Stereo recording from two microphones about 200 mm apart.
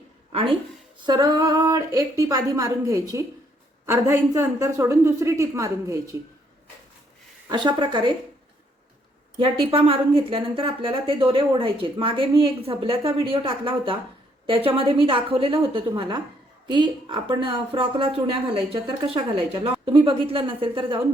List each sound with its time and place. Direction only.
1.0 s speech: 20° right (ahead or behind)
7.4 s a woman's voice: 20° right (ahead or behind)
9.4 s a woman's voice: 25° right (ahead or behind)